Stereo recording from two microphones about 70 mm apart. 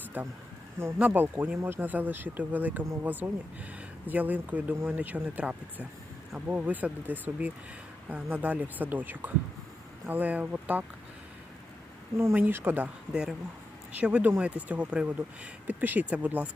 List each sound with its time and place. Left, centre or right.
0.2 s speech: right
0.8 s speech: right
1.0 s speech: right
12.1 s speech: right
13.9 s speech: centre